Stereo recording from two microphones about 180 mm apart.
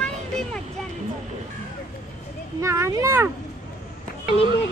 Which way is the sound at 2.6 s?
15° right (ahead or behind).